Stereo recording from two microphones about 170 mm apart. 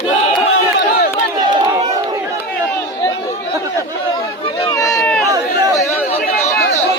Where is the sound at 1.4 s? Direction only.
25° right (ahead or behind).